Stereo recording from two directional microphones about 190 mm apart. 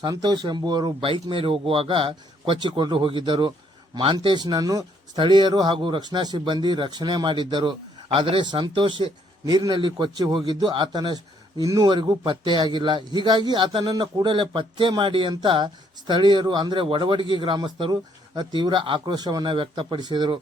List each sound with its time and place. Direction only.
0.0 s a man's voice: 20° right (ahead or behind)